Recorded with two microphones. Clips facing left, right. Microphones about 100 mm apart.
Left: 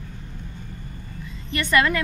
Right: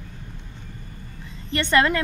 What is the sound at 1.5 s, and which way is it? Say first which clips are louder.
Speech: right 1 dB; 30° right (ahead or behind).